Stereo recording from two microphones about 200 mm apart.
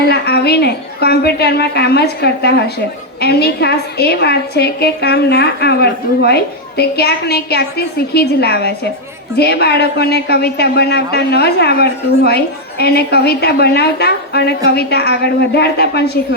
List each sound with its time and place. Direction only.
0.0 s a woman's voice: 55° left (ahead or behind)